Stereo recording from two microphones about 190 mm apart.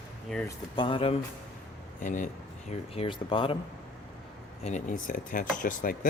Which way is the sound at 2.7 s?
30° left (ahead or behind).